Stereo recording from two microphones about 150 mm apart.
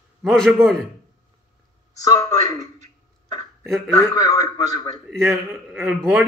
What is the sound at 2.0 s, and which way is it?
Speech, 20° left (ahead or behind).